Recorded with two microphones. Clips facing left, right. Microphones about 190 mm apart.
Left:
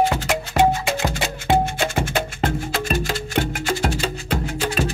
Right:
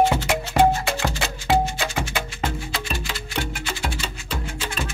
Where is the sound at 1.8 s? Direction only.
50° left (ahead or behind).